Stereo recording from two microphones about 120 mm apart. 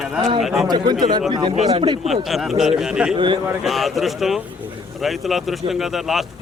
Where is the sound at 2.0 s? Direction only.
Centre (ahead or behind).